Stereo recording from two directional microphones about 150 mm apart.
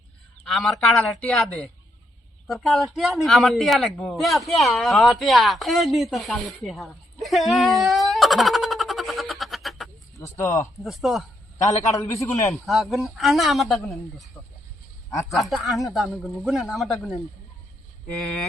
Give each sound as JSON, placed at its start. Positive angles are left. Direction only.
{"t": 0.4, "sound": "a man's voice", "side_deg": 0}
{"t": 10.2, "sound": "a man's voice", "side_deg": 20}
{"t": 10.8, "sound": "speech", "side_deg": 0}
{"t": 11.5, "sound": "a man's voice", "side_deg": 20}
{"t": 12.6, "sound": "speech", "side_deg": 0}